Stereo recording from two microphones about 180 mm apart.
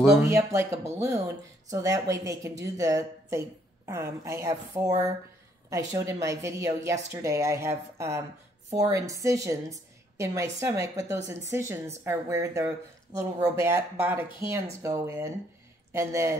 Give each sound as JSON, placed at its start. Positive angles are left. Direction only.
{"t": 0.2, "sound": "a woman's voice", "side_deg": -15}